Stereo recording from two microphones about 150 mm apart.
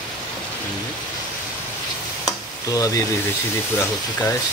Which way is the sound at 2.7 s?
25° left (ahead or behind).